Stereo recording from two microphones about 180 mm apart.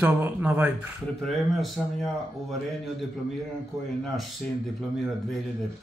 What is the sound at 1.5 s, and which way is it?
Speech, centre (ahead or behind).